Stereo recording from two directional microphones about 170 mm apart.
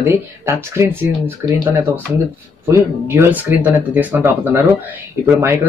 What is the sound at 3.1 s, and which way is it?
Speech, 10° right (ahead or behind).